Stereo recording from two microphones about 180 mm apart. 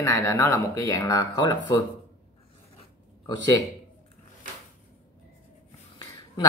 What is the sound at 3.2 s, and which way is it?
Speech, 20° left (ahead or behind).